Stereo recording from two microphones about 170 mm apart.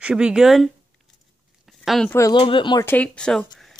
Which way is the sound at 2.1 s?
20° left (ahead or behind).